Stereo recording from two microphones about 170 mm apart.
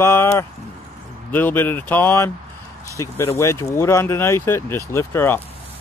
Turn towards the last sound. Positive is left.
turn(degrees=15)  # may be behind; listen again after turning